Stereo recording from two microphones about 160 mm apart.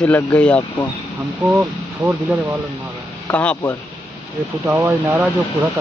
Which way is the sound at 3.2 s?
10° left (ahead or behind).